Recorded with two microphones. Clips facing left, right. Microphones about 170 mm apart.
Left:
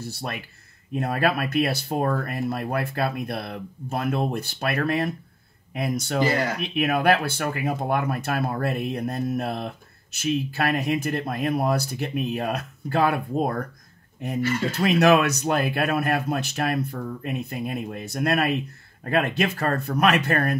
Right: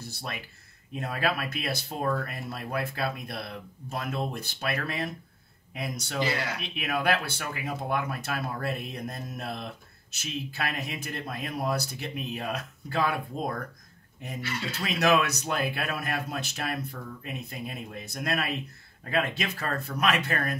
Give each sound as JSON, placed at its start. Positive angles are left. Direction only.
{"t": 0.9, "sound": "speech", "side_deg": 55}